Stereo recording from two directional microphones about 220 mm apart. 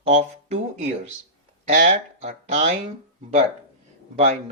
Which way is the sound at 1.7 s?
35° right (ahead or behind).